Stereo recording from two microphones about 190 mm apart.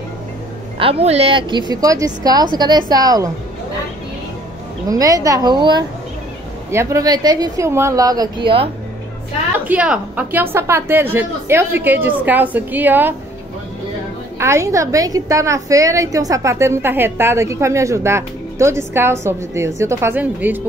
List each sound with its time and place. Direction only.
0.7 s a woman's voice: 30° right (ahead or behind)
1.7 s a woman's voice: 20° right (ahead or behind)
4.8 s a woman's voice: 20° right (ahead or behind)
9.7 s a woman's voice: 5° right (ahead or behind)
14.4 s a woman's voice: 15° right (ahead or behind)